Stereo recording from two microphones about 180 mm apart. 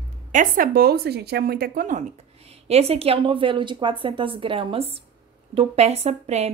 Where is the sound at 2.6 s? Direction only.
35° right (ahead or behind).